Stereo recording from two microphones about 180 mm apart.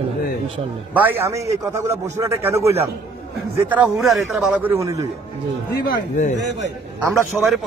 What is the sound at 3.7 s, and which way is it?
Speech, 5° right (ahead or behind).